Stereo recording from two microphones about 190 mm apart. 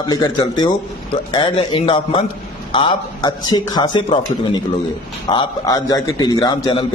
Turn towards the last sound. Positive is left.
turn(degrees=25)  # may be behind; listen again after turning